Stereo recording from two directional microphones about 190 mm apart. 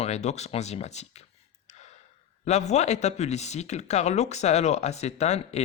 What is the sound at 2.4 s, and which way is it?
Speech, 35° left (ahead or behind).